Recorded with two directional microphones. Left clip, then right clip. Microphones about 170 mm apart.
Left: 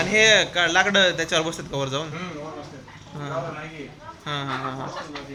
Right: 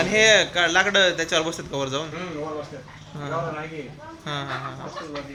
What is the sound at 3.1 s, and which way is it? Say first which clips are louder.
Speech: even; 10° left (ahead or behind).